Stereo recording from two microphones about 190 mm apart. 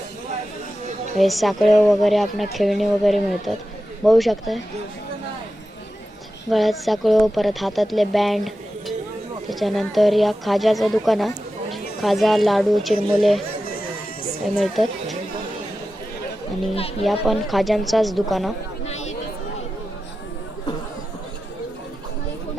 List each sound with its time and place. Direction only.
1.2 s speech: centre (ahead or behind)
6.5 s speech: centre (ahead or behind)
14.6 s speech: centre (ahead or behind)
16.7 s speech: 30° left (ahead or behind)
17.2 s speech: centre (ahead or behind)